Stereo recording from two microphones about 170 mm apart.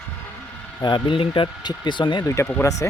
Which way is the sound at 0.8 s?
30° left (ahead or behind).